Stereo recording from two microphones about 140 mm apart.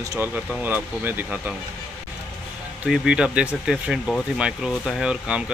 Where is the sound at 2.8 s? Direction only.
5° right (ahead or behind).